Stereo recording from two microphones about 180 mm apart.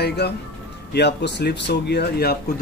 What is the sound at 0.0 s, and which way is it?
Speech, 65° left (ahead or behind).